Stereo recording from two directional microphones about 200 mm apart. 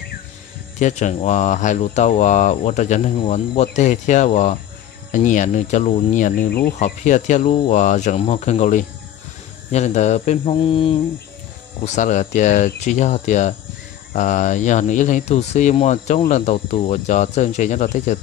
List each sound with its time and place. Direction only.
0.7 s speech: 35° left (ahead or behind)
7.5 s speech: 25° left (ahead or behind)
7.8 s speech: 35° left (ahead or behind)
11.8 s speech: 35° left (ahead or behind)